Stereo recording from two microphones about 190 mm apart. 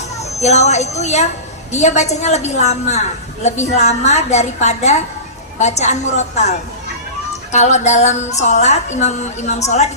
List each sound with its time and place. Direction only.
0.2 s a child's voice: 35° left (ahead or behind)
7.5 s a woman's voice: 35° left (ahead or behind)